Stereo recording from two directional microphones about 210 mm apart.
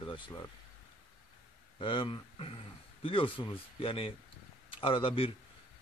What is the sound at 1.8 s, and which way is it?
Speech, 25° left (ahead or behind).